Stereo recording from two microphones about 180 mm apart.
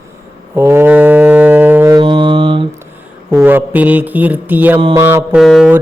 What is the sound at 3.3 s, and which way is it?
Mantra, 15° right (ahead or behind).